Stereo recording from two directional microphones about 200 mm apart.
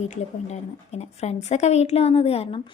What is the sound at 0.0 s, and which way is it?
A woman's voice, 35° left (ahead or behind).